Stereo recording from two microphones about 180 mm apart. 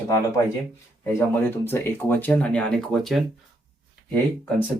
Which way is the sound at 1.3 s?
10° left (ahead or behind).